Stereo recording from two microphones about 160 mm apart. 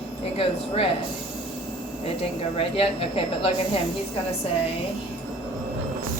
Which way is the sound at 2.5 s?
35° left (ahead or behind).